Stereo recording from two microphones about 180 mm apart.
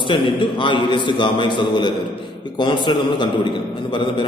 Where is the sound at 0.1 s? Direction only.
25° left (ahead or behind).